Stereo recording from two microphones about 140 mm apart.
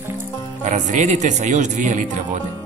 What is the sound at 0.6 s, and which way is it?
Speech, 60° right (ahead or behind).